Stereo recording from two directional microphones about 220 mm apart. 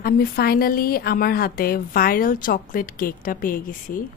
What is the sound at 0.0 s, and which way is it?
A woman's voice, 45° left (ahead or behind).